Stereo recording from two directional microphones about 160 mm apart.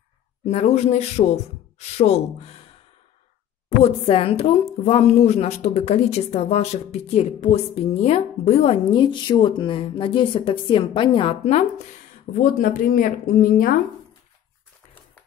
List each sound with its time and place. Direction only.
0.5 s a woman's voice: 40° left (ahead or behind)
3.8 s a woman's voice: 35° left (ahead or behind)
12.4 s a woman's voice: 60° left (ahead or behind)